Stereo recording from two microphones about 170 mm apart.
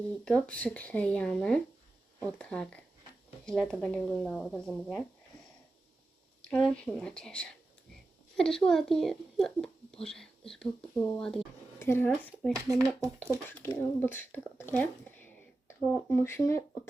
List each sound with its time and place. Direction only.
0.3 s speech: 5° left (ahead or behind)
6.5 s speech: 5° left (ahead or behind)
12.5 s speech: 20° right (ahead or behind)
13.5 s speech: 15° left (ahead or behind)